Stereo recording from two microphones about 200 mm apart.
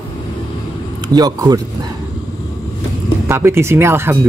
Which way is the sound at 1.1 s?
20° right (ahead or behind).